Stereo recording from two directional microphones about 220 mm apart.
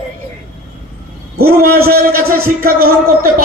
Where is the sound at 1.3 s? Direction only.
45° right (ahead or behind).